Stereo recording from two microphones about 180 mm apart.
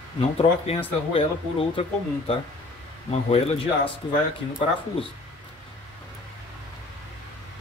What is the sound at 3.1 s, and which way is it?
Speech, 35° left (ahead or behind).